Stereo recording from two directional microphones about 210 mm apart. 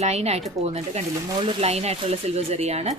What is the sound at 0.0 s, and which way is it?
A woman's voice, 30° right (ahead or behind).